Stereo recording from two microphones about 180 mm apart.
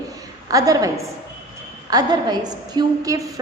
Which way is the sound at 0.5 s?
20° right (ahead or behind).